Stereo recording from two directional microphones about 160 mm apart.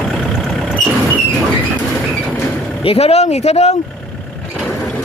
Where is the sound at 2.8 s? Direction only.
40° left (ahead or behind).